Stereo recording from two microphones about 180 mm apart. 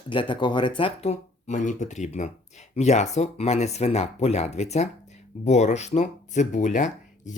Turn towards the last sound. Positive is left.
turn(degrees=40)  # may be behind; listen again after turning